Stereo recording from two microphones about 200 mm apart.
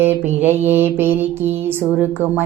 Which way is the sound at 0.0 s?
10° right (ahead or behind).